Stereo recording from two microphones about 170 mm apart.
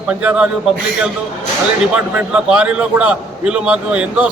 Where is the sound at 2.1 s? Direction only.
5° right (ahead or behind).